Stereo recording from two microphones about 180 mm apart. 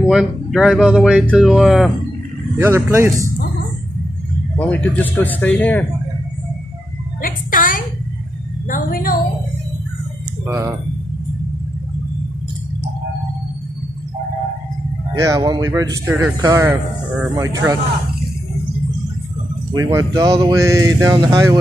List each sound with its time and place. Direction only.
0.0 s a man's voice: 5° right (ahead or behind)
2.6 s speech: 15° right (ahead or behind)
4.6 s speech: 5° left (ahead or behind)
7.2 s music: 50° left (ahead or behind)
8.6 s a woman's voice: 50° left (ahead or behind)
10.4 s speech: 15° right (ahead or behind)
15.1 s speech: 20° right (ahead or behind)
19.8 s speech: 15° right (ahead or behind)